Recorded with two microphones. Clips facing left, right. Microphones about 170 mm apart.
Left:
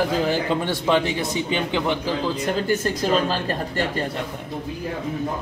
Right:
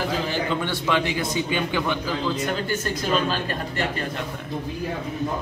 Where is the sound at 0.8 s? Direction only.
30° left (ahead or behind).